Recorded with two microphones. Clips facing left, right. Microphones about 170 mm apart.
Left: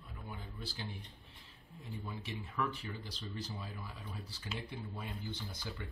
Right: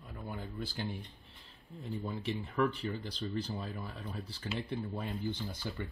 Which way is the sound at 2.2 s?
60° right (ahead or behind).